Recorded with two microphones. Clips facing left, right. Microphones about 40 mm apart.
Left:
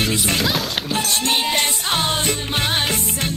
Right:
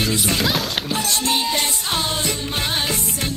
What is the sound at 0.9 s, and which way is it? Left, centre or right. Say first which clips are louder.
Music: left 2 dB; left.